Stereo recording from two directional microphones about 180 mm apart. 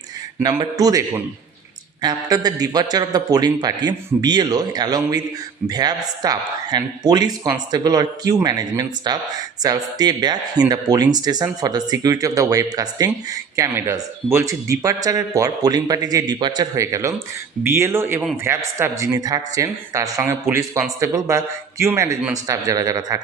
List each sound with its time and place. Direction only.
0.4 s speech: 20° right (ahead or behind)